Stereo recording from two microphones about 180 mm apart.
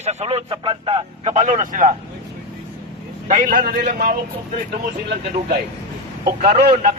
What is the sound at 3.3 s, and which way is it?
Speech, 45° right (ahead or behind).